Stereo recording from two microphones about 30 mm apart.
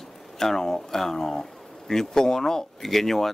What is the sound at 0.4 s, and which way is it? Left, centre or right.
Speech, centre.